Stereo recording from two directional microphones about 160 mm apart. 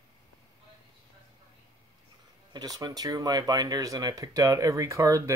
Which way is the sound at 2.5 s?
25° right (ahead or behind).